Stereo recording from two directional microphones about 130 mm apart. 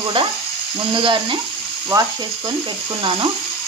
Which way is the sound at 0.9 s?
40° right (ahead or behind).